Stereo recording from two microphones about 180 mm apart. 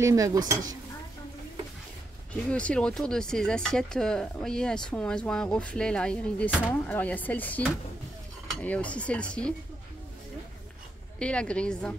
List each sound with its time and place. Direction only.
0.0 s speech: 20° right (ahead or behind)
2.5 s speech: 5° left (ahead or behind)
11.1 s speech: 5° left (ahead or behind)